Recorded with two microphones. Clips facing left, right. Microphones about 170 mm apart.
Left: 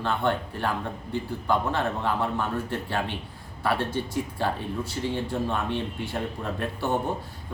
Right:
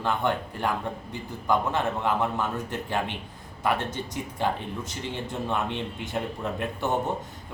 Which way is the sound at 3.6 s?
20° right (ahead or behind).